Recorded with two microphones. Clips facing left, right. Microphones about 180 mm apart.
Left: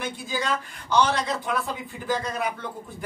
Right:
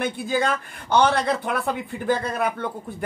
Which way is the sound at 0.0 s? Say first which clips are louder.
Right 6 dB; 60° right (ahead or behind).